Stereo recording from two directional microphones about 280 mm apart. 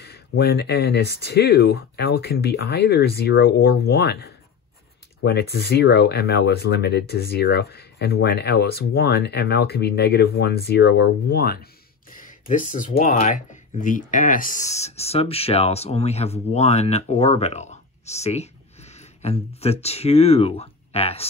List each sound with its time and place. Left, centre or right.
0.0 s speech: left